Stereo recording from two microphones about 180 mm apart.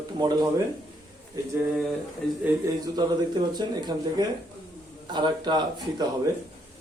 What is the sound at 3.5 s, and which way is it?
Speech, 25° right (ahead or behind).